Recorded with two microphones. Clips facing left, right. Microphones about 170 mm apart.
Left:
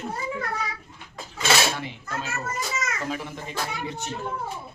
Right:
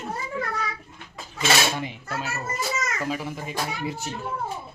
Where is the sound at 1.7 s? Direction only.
15° right (ahead or behind).